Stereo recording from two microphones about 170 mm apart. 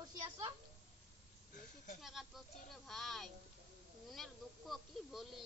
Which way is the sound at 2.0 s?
Centre (ahead or behind).